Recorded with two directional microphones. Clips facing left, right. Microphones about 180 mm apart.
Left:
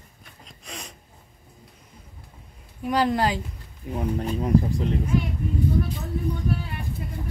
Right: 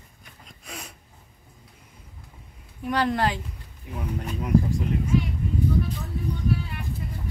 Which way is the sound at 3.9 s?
30° left (ahead or behind).